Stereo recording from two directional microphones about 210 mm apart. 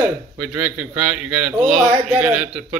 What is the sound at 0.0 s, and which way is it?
A man's voice, 5° right (ahead or behind).